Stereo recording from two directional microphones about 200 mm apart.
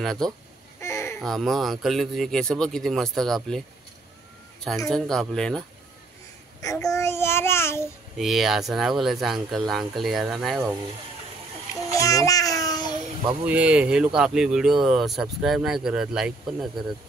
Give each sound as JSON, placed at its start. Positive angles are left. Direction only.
{"t": 0.0, "sound": "speech", "side_deg": 0}
{"t": 0.7, "sound": "a sound", "side_deg": 15}
{"t": 1.2, "sound": "speech", "side_deg": 0}
{"t": 4.8, "sound": "speech", "side_deg": 0}
{"t": 6.6, "sound": "a child's voice", "side_deg": 15}
{"t": 8.2, "sound": "speech", "side_deg": 0}
{"t": 11.9, "sound": "child singing", "side_deg": 15}
{"t": 13.3, "sound": "speech", "side_deg": -5}